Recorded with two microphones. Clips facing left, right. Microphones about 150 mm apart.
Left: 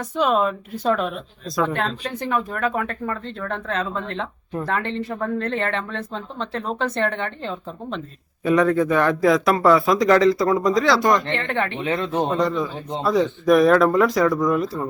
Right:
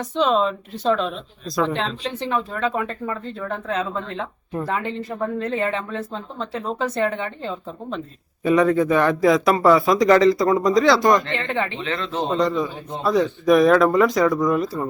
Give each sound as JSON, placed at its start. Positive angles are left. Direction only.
{"t": 0.2, "sound": "speech", "side_deg": 10}
{"t": 2.2, "sound": "speech", "side_deg": -20}
{"t": 11.3, "sound": "speech", "side_deg": -15}
{"t": 11.8, "sound": "speech", "side_deg": 15}
{"t": 12.3, "sound": "speech", "side_deg": -20}
{"t": 13.0, "sound": "speech", "side_deg": 0}